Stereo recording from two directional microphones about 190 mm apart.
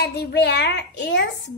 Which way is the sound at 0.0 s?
60° left (ahead or behind).